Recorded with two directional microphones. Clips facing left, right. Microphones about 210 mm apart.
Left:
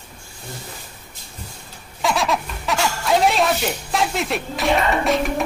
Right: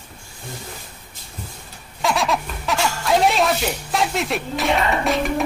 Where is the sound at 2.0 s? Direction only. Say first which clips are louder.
Even; centre (ahead or behind).